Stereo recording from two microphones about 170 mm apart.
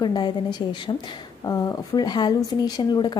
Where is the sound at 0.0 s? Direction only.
25° left (ahead or behind).